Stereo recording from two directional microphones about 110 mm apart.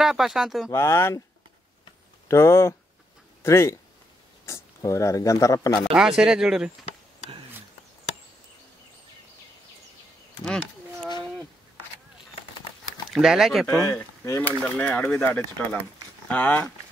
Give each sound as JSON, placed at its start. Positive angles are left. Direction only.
{"t": 0.0, "sound": "speech", "side_deg": -5}
{"t": 0.7, "sound": "speech", "side_deg": 25}
{"t": 2.2, "sound": "speech", "side_deg": 25}
{"t": 5.9, "sound": "speech", "side_deg": -5}
{"t": 10.4, "sound": "a sound", "side_deg": 5}
{"t": 13.1, "sound": "speech", "side_deg": -5}
{"t": 14.4, "sound": "speech", "side_deg": 15}